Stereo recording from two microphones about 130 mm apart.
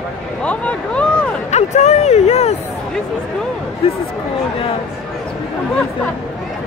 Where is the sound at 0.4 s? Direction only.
10° left (ahead or behind).